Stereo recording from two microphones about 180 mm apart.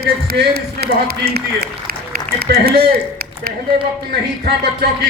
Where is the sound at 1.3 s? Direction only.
60° right (ahead or behind).